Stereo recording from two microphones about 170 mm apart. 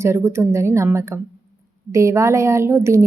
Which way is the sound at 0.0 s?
15° right (ahead or behind).